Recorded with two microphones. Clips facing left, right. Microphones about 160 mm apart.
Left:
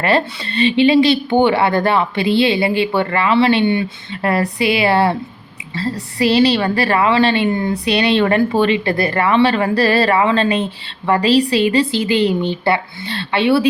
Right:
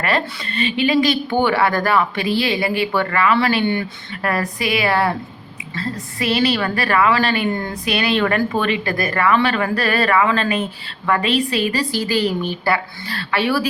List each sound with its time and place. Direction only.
0.0 s a woman's voice: 30° left (ahead or behind)